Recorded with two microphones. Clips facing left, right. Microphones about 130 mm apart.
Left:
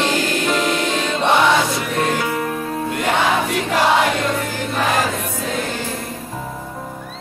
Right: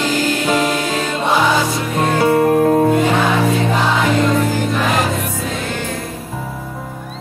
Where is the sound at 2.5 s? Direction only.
50° right (ahead or behind).